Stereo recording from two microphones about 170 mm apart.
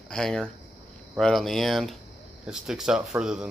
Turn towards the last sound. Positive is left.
turn(degrees=-5)  # may be behind; listen again after turning